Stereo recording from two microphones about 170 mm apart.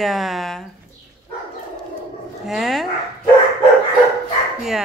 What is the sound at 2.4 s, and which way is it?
Speech, centre (ahead or behind).